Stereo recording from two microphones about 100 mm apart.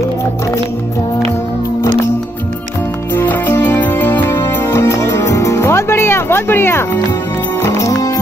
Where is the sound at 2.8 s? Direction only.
20° left (ahead or behind).